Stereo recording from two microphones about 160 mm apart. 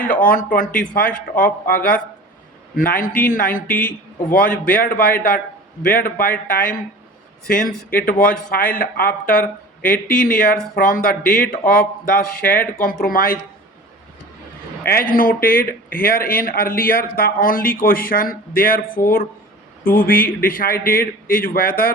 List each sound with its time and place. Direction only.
0.0 s a man's voice: 60° left (ahead or behind)
7.9 s a man's voice: 60° left (ahead or behind)
14.8 s a man's voice: 65° left (ahead or behind)